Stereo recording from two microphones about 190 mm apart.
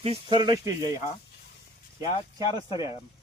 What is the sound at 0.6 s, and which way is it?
Speech, 20° right (ahead or behind).